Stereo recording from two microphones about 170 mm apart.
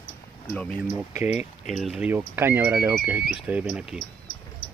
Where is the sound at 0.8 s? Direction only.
10° right (ahead or behind).